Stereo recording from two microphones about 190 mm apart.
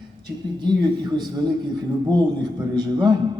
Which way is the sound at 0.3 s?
20° right (ahead or behind).